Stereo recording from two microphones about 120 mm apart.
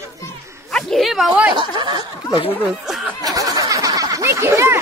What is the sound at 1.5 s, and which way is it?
Speech, 40° right (ahead or behind).